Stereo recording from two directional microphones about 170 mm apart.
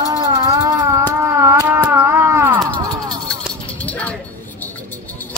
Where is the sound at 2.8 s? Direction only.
20° right (ahead or behind).